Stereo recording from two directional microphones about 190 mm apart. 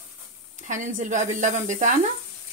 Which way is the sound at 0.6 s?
40° right (ahead or behind).